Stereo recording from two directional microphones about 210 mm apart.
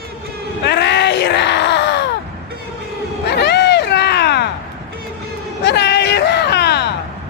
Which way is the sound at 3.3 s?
55° left (ahead or behind).